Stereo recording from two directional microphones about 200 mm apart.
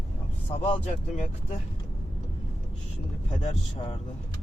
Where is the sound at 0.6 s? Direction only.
25° left (ahead or behind).